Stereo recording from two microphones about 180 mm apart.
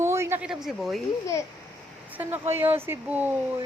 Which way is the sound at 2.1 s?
10° right (ahead or behind).